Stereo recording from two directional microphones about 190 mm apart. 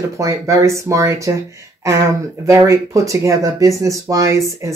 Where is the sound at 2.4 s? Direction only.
15° right (ahead or behind).